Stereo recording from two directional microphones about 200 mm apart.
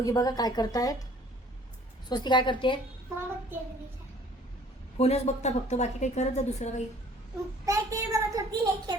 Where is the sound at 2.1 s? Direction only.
20° left (ahead or behind).